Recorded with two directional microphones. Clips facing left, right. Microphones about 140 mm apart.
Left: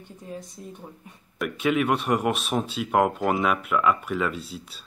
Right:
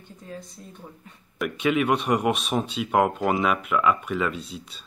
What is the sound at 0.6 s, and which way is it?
Speech, 20° left (ahead or behind).